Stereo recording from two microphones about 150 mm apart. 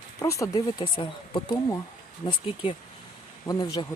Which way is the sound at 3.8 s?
35° left (ahead or behind).